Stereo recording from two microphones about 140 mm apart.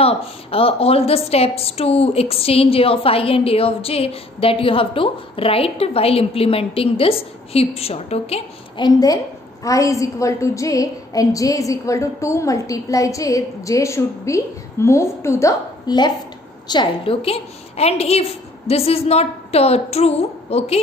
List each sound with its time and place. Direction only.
0.0 s a woman's voice: 40° left (ahead or behind)
8.8 s a woman's voice: 25° left (ahead or behind); by 20.8 s 45° left (ahead or behind)